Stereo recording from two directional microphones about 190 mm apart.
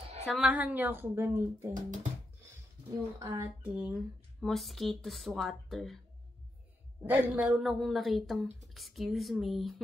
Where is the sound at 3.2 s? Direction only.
10° right (ahead or behind).